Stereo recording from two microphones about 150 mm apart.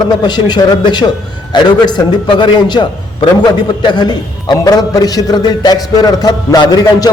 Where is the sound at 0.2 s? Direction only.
30° left (ahead or behind).